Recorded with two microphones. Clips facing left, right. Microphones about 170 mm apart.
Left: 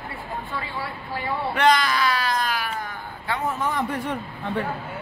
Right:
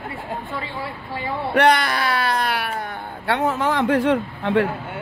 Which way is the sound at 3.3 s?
80° right.